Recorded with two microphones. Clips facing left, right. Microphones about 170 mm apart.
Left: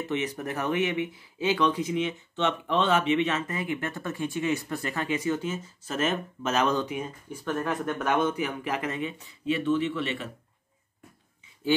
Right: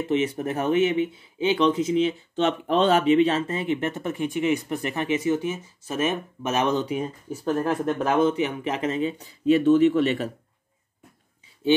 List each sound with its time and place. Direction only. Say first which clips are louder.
0.1 s speech: right 8 dB; 30° right (ahead or behind)
6.9 s speech: right 6 dB; 40° right (ahead or behind)
9.2 s speech: right 11 dB; 40° right (ahead or behind)